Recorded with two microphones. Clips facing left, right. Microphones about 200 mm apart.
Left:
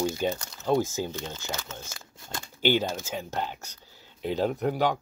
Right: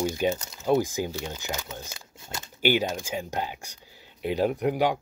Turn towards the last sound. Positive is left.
turn(degrees=-10)  # may be behind; listen again after turning